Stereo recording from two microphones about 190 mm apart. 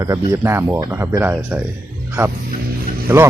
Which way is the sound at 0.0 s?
15° right (ahead or behind).